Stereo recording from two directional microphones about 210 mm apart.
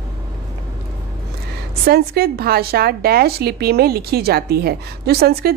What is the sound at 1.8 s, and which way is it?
A woman's voice, 45° right (ahead or behind).